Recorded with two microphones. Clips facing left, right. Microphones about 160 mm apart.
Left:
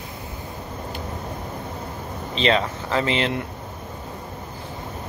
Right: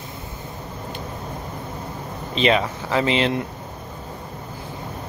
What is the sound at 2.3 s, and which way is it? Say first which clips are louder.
Speech: right 2 dB; 15° right (ahead or behind).